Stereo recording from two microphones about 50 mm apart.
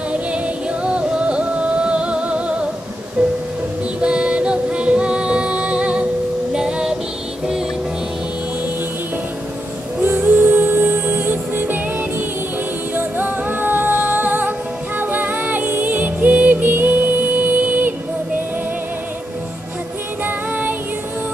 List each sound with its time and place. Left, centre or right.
0.8 s music: right
10.0 s music: right
12.9 s music: right
20.2 s music: right